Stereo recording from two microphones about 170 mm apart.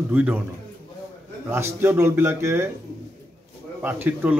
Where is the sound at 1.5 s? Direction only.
15° right (ahead or behind).